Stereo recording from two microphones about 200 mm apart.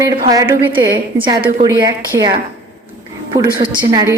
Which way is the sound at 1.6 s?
15° right (ahead or behind).